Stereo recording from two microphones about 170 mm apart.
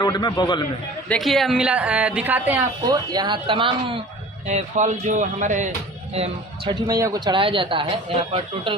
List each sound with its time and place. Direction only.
0.0 s a man's voice: 25° left (ahead or behind)
1.0 s a woman's voice: 5° left (ahead or behind)
2.8 s speech: 25° right (ahead or behind)
4.4 s speech: 45° right (ahead or behind)
6.7 s speech: 25° right (ahead or behind)